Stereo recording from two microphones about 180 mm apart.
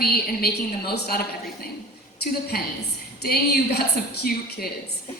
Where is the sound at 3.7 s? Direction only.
60° left (ahead or behind).